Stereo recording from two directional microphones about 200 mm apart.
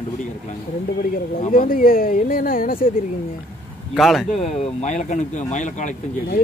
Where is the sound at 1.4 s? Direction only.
45° left (ahead or behind).